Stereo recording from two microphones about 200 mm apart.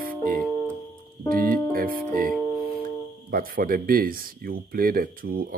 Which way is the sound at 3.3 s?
45° right (ahead or behind).